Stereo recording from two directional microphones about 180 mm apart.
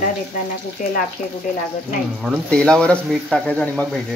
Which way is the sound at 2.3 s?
5° left (ahead or behind).